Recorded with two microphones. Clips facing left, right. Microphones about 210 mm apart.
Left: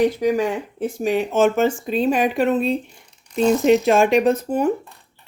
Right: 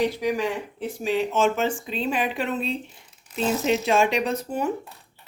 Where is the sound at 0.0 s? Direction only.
50° left (ahead or behind).